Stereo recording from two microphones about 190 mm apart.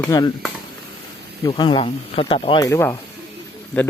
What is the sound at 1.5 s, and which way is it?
Speech, 25° left (ahead or behind).